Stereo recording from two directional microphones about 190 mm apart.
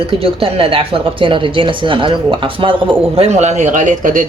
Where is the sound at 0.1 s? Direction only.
30° right (ahead or behind).